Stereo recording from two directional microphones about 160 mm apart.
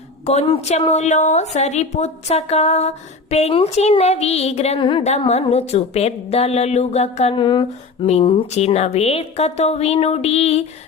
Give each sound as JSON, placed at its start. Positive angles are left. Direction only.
{"t": 0.3, "sound": "a woman's voice", "side_deg": 40}
{"t": 5.0, "sound": "a woman's voice", "side_deg": 45}
{"t": 7.4, "sound": "a sound", "side_deg": 30}
{"t": 8.0, "sound": "a woman's voice", "side_deg": 40}